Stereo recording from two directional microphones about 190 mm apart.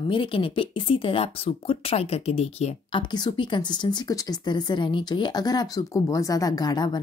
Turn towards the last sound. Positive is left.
turn(degrees=20)  # may be behind; listen again after turning